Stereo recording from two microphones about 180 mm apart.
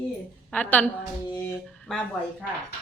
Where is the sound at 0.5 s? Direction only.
10° left (ahead or behind).